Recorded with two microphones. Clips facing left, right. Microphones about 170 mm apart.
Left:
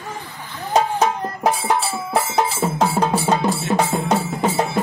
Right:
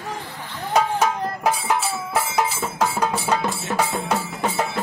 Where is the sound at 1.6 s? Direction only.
35° left (ahead or behind).